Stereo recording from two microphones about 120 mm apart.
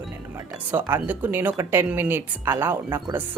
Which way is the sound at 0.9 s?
15° right (ahead or behind).